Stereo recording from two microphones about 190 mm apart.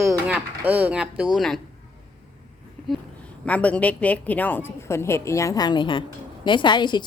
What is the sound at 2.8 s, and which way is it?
A woman's voice, 5° left (ahead or behind).